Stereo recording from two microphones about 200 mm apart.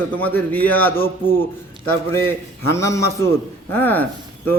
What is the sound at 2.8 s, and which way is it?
A man's voice, 15° left (ahead or behind).